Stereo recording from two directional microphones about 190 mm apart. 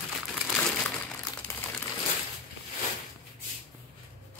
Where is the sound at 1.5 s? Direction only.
15° left (ahead or behind).